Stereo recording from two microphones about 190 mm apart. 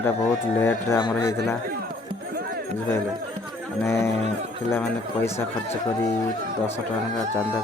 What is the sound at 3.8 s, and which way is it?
A man's voice, 15° left (ahead or behind).